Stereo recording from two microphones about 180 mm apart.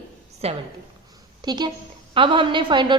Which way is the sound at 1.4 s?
25° right (ahead or behind).